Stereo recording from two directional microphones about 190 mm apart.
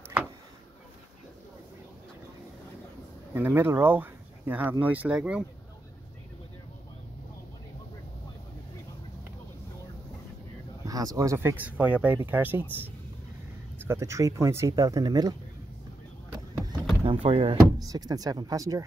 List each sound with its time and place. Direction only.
3.3 s speech: 10° right (ahead or behind)
10.9 s speech: 20° right (ahead or behind)
13.7 s speech: 15° right (ahead or behind)
17.0 s speech: 30° right (ahead or behind)